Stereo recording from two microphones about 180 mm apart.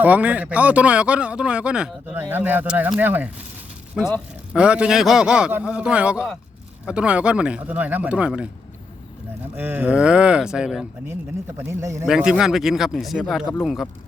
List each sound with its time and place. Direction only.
0.0 s a man's voice: 10° right (ahead or behind)
9.6 s a man's voice: 10° right (ahead or behind)
11.6 s speech: 15° right (ahead or behind)
12.0 s a man's voice: 5° right (ahead or behind)